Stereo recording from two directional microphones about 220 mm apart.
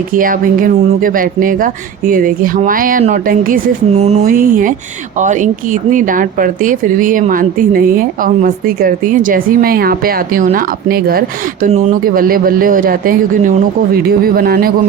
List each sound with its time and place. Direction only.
0.1 s speech: 40° right (ahead or behind)